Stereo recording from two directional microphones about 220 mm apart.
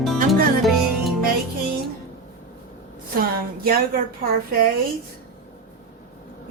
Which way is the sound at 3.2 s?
40° right (ahead or behind).